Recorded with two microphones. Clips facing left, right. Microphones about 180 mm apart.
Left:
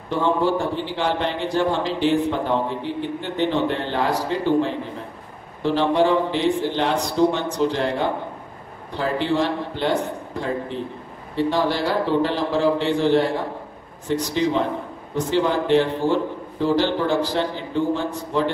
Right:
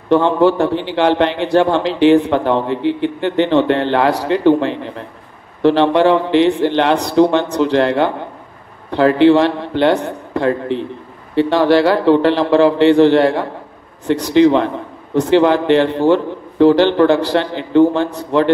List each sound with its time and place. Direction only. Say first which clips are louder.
0.1 s a man's voice: right 8 dB; 75° right (ahead or behind)